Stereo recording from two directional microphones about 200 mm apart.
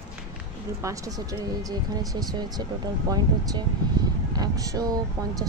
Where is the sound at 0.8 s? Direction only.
15° right (ahead or behind).